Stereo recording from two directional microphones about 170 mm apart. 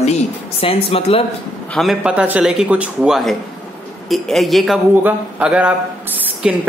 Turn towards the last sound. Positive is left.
turn(degrees=-10)  # may be behind; listen again after turning